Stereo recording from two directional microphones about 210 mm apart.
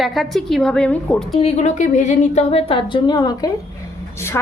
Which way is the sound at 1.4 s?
35° left (ahead or behind).